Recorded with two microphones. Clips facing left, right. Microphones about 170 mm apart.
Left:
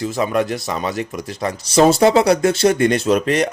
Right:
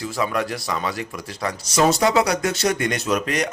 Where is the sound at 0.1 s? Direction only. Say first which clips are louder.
Left 3 dB; 25° left (ahead or behind).